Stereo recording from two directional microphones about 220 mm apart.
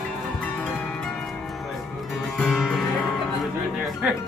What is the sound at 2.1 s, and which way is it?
Music, centre (ahead or behind).